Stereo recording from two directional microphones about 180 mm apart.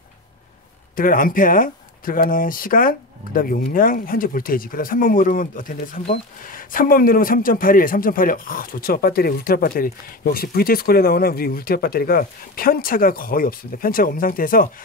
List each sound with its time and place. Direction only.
0.9 s speech: 50° left (ahead or behind)